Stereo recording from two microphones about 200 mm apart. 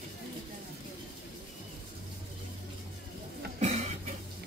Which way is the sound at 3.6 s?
30° right (ahead or behind).